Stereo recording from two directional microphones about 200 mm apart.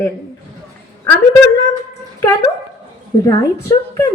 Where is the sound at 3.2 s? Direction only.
20° left (ahead or behind).